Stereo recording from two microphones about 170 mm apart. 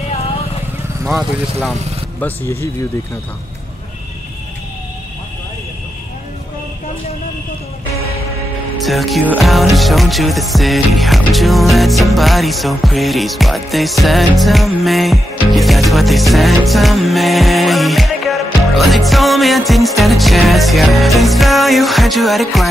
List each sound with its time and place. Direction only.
1.0 s music: centre (ahead or behind)
2.1 s speech: 15° left (ahead or behind)
8.7 s speech: centre (ahead or behind)
9.3 s music: centre (ahead or behind)